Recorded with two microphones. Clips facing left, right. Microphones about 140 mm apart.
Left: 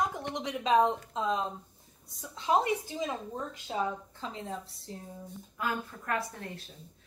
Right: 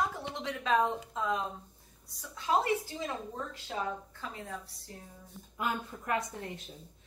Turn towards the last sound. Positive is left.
turn(degrees=-20)  # may be behind; listen again after turning